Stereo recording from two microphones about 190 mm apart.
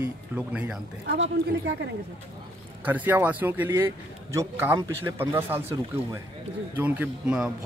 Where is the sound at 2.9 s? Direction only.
10° right (ahead or behind).